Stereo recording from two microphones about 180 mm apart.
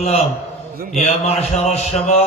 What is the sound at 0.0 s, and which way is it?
A man's voice, 35° left (ahead or behind).